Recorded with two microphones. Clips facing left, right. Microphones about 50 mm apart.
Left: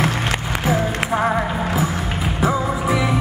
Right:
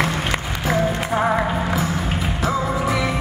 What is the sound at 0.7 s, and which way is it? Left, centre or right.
Music, centre.